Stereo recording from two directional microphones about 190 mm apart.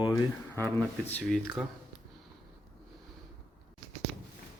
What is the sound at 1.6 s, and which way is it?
Speech, centre (ahead or behind).